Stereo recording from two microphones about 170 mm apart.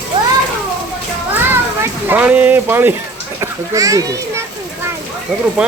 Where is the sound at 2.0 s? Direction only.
10° right (ahead or behind).